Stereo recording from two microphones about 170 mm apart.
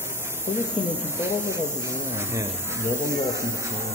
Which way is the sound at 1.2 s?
15° right (ahead or behind).